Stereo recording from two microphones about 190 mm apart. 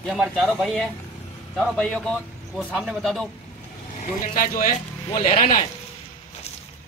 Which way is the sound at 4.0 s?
45° left (ahead or behind).